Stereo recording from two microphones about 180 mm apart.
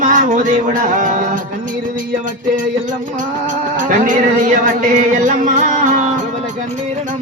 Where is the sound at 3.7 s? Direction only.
45° right (ahead or behind).